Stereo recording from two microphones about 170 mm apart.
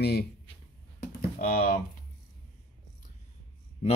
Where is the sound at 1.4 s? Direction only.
55° left (ahead or behind).